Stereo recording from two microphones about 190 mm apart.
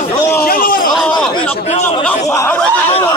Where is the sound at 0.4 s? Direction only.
50° left (ahead or behind).